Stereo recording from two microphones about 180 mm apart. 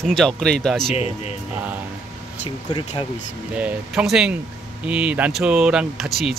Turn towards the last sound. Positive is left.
turn(degrees=0)  # may be behind; listen again after turning